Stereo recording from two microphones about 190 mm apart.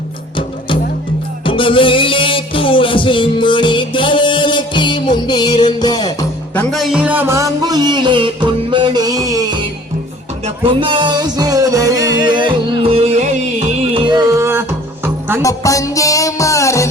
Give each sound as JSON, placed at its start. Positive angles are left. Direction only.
{"t": 1.5, "sound": "music", "side_deg": 25}
{"t": 6.5, "sound": "music", "side_deg": 5}
{"t": 14.0, "sound": "music", "side_deg": -20}
{"t": 15.4, "sound": "music", "side_deg": 15}